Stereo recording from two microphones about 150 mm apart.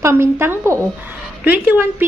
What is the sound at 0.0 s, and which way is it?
A woman's voice, 15° right (ahead or behind).